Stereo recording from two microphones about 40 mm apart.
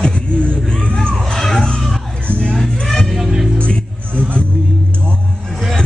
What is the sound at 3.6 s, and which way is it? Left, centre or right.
Music, left.